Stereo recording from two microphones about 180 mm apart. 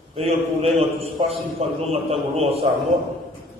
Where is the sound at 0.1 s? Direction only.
35° right (ahead or behind).